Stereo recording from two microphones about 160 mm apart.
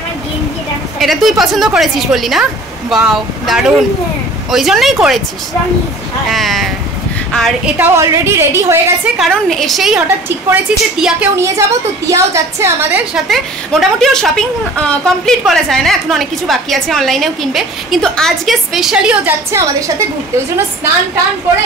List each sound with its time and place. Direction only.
0.9 s a woman's voice: centre (ahead or behind)
6.3 s a sound: centre (ahead or behind)
7.3 s a woman's voice: centre (ahead or behind)
7.7 s a woman's voice: 15° right (ahead or behind)
9.2 s a woman's voice: centre (ahead or behind)
11.3 s a woman's voice: 20° right (ahead or behind)
13.1 s a woman's voice: centre (ahead or behind)